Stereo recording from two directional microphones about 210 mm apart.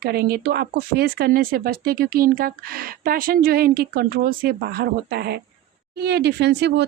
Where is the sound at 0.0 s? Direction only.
45° right (ahead or behind).